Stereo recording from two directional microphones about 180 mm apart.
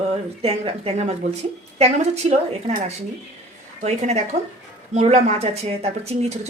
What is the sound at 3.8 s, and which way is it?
Speech, 35° right (ahead or behind).